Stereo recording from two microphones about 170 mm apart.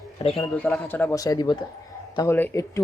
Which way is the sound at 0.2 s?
35° left (ahead or behind).